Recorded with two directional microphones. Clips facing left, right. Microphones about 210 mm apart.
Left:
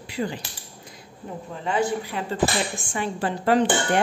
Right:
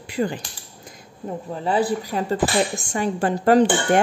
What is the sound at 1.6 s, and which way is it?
Speech, 35° right (ahead or behind).